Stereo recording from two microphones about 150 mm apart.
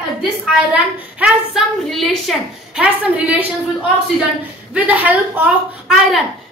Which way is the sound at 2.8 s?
10° right (ahead or behind).